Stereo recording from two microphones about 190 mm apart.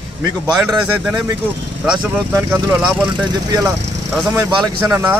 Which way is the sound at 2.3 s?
15° right (ahead or behind).